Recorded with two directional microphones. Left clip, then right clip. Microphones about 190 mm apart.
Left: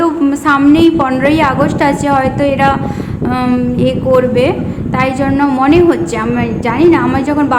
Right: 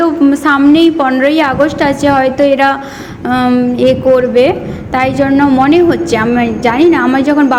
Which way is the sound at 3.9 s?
20° right (ahead or behind).